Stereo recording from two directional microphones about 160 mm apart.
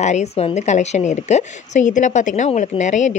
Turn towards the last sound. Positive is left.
turn(degrees=50)  # may be behind; listen again after turning